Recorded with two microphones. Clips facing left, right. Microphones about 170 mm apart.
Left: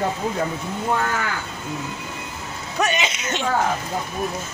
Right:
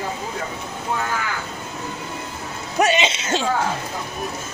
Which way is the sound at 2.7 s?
25° right (ahead or behind).